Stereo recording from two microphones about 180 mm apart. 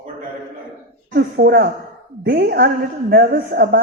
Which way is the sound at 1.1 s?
60° right (ahead or behind).